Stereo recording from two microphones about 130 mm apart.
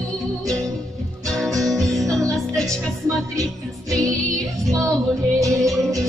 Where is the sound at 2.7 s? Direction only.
25° right (ahead or behind).